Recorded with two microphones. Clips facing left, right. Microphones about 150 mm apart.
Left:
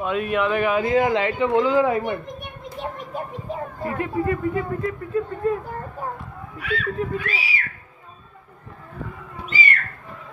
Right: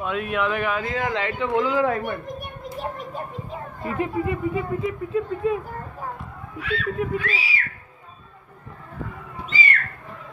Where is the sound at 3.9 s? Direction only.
20° right (ahead or behind).